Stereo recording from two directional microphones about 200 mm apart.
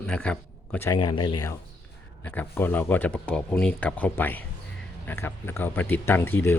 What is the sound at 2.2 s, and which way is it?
Speech, 10° left (ahead or behind).